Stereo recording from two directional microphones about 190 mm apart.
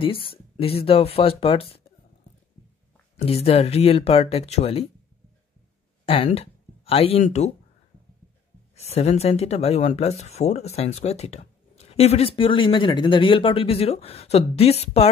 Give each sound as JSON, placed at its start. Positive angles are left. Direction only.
{"t": 0.0, "sound": "speech", "side_deg": 30}
{"t": 3.2, "sound": "speech", "side_deg": 30}
{"t": 6.0, "sound": "speech", "side_deg": 30}
{"t": 8.7, "sound": "speech", "side_deg": 35}